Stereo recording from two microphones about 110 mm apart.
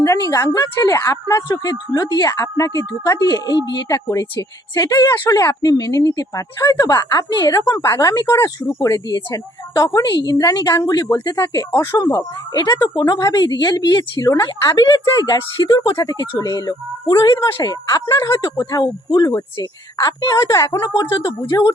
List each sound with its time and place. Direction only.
0.0 s a woman's voice: 30° left (ahead or behind)
12.5 s a woman's voice: 40° left (ahead or behind)
15.9 s a woman's voice: 25° left (ahead or behind)